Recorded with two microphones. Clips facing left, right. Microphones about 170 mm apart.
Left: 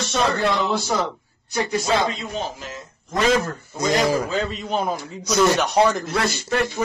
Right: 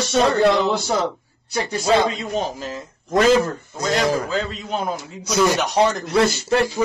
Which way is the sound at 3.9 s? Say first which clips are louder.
Even; centre (ahead or behind).